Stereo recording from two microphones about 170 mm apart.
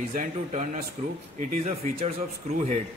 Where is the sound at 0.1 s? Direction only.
45° right (ahead or behind).